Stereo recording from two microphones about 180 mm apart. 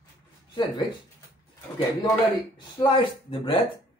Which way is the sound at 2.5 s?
25° left (ahead or behind).